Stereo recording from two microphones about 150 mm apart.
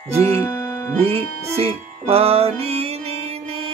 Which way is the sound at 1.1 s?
40° right (ahead or behind).